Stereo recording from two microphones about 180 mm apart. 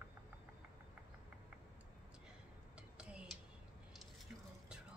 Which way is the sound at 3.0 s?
5° right (ahead or behind).